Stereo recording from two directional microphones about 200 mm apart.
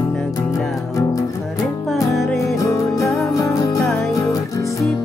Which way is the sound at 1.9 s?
Centre (ahead or behind).